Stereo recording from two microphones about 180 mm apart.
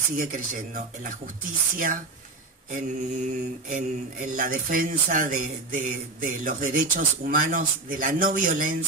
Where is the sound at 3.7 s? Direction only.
50° right (ahead or behind).